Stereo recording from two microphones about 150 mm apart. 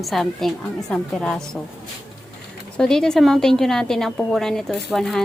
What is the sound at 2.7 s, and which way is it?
A woman's voice, 5° left (ahead or behind).